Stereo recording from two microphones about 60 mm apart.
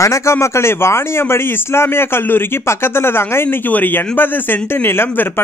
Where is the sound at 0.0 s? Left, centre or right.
Left.